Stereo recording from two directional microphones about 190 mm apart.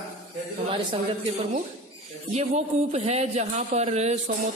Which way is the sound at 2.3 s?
35° right (ahead or behind).